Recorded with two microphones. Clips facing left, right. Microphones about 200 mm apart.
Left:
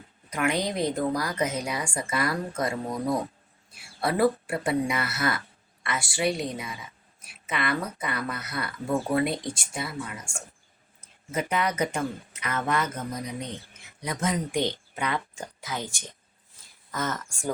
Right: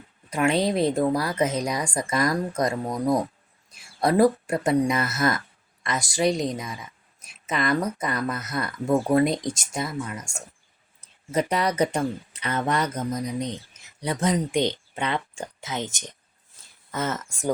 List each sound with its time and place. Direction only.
0.3 s speech: 30° right (ahead or behind)
14.5 s speech: 20° right (ahead or behind)